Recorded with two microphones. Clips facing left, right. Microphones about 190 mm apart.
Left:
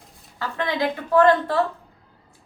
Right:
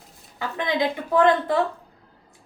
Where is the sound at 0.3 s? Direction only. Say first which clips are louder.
Right 1 dB; 15° right (ahead or behind).